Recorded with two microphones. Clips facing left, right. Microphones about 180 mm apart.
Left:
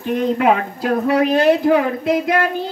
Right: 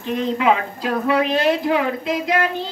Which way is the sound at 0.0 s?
55° left (ahead or behind).